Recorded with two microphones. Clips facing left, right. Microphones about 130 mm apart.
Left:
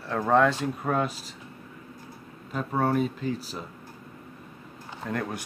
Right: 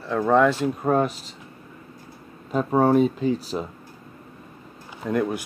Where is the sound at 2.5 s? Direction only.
30° right (ahead or behind).